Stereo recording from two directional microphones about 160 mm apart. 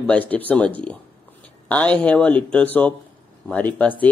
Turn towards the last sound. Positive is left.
turn(degrees=10)  # may be behind; listen again after turning